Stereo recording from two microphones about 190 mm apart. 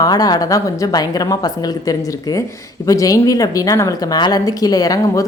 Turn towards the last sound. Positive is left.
turn(degrees=20)  # may be behind; listen again after turning